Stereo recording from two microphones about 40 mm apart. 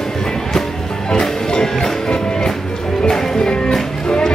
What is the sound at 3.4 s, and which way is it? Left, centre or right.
Music, left.